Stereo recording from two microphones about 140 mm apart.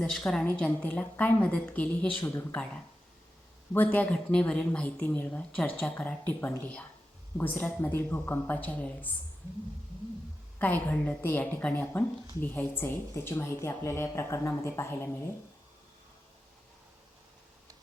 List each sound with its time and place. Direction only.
0.0 s speech: 5° left (ahead or behind)
10.6 s speech: 10° left (ahead or behind)